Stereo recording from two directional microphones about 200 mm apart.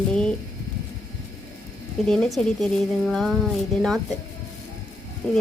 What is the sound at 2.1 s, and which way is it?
Speech, centre (ahead or behind).